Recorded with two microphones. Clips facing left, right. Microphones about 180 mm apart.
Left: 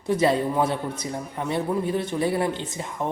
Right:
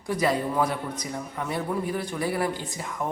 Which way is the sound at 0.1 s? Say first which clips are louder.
Left 4 dB; 25° left (ahead or behind).